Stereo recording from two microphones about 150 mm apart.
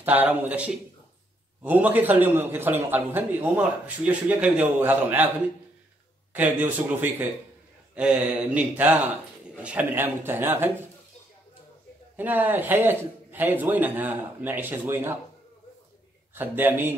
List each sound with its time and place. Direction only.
0.0 s a man's voice: 10° right (ahead or behind)
6.3 s a man's voice: 10° right (ahead or behind)
12.2 s a man's voice: 10° right (ahead or behind)
16.3 s a man's voice: 15° right (ahead or behind)